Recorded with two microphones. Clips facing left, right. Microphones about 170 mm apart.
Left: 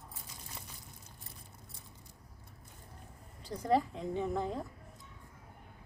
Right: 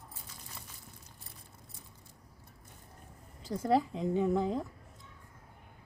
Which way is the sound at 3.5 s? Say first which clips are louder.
Right 2 dB; 5° right (ahead or behind).